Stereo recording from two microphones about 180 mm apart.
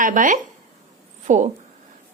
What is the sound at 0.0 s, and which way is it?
Speech, 45° right (ahead or behind).